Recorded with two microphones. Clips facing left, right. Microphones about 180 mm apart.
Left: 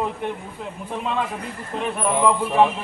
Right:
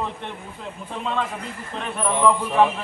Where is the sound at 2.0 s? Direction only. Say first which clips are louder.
Even; 15° left (ahead or behind).